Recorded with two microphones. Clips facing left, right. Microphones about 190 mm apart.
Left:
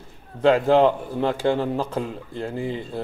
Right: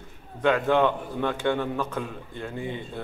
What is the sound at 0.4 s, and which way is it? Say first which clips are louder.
A man's voice: left 5 dB; 30° left (ahead or behind).